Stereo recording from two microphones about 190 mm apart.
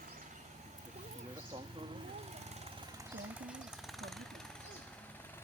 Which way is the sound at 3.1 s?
5° right (ahead or behind).